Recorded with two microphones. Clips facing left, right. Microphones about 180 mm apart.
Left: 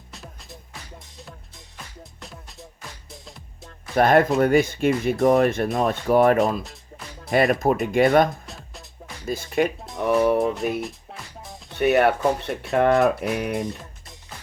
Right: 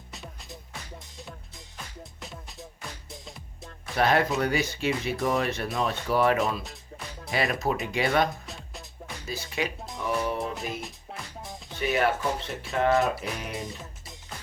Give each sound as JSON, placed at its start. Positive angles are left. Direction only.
{"t": 0.1, "sound": "music", "side_deg": 0}
{"t": 2.2, "sound": "music", "side_deg": 0}
{"t": 3.9, "sound": "speech", "side_deg": 50}
{"t": 8.4, "sound": "music", "side_deg": 0}
{"t": 9.2, "sound": "speech", "side_deg": 50}
{"t": 9.9, "sound": "music", "side_deg": 60}
{"t": 11.8, "sound": "speech", "side_deg": 65}